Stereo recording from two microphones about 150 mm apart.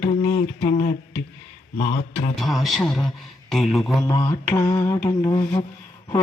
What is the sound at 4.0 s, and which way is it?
Mantra, 20° left (ahead or behind).